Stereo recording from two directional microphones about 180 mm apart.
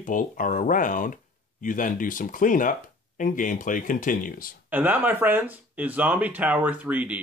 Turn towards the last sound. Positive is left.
turn(degrees=-10)  # may be behind; listen again after turning